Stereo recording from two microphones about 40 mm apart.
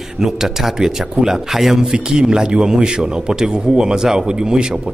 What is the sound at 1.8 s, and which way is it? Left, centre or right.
A man's voice, centre.